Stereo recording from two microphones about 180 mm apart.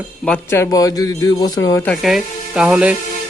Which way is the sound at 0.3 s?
15° left (ahead or behind).